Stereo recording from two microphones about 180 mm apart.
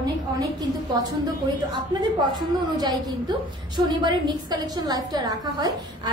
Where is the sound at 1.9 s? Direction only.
25° right (ahead or behind).